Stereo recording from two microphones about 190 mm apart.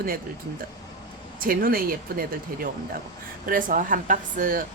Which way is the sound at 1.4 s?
50° right (ahead or behind).